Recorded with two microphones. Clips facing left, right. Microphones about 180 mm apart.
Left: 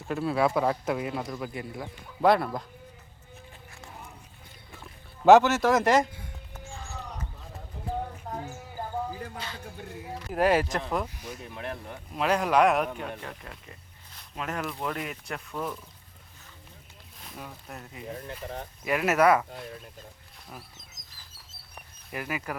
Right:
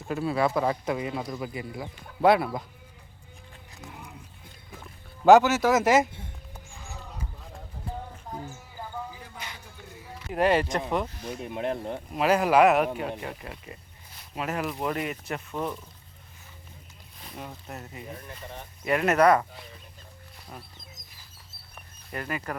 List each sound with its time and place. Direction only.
0.1 s a man's voice: centre (ahead or behind)
5.2 s a man's voice: centre (ahead or behind)
9.1 s music: 50° left (ahead or behind)
10.2 s a man's voice: centre (ahead or behind)
11.3 s speech: 20° right (ahead or behind)
12.1 s a man's voice: 5° right (ahead or behind)
17.2 s a man's voice: centre (ahead or behind)
22.1 s speech: 10° left (ahead or behind)